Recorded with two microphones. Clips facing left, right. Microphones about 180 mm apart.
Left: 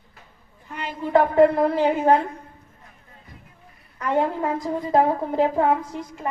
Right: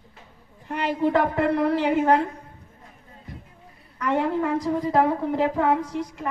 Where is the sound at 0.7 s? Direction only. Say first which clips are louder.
Right 7 dB; 70° right (ahead or behind).